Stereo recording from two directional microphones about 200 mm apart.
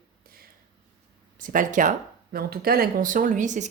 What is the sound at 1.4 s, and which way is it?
A woman's voice, 40° right (ahead or behind).